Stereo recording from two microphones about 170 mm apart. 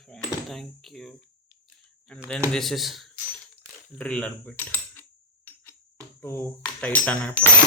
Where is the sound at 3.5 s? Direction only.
5° left (ahead or behind).